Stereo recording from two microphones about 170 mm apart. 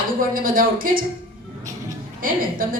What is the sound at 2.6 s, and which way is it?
Speech, 55° right (ahead or behind).